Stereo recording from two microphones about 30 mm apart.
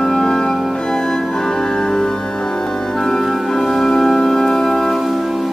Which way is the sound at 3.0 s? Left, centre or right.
Centre.